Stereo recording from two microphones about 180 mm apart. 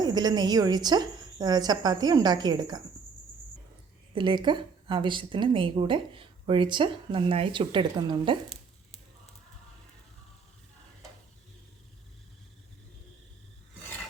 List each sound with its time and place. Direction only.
0.0 s speech: 20° right (ahead or behind)
4.1 s speech: 25° right (ahead or behind)
8.4 s a sound: 35° left (ahead or behind)